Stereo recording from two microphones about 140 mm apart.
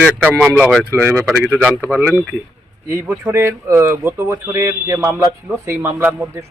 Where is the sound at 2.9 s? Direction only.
20° right (ahead or behind).